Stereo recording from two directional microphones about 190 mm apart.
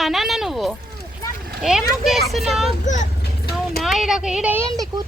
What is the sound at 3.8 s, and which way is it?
Speech, centre (ahead or behind).